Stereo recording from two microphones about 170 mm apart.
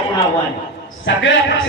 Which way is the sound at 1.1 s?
90° left.